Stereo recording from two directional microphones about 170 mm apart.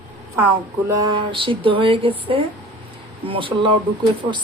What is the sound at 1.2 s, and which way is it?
Speech, 30° right (ahead or behind).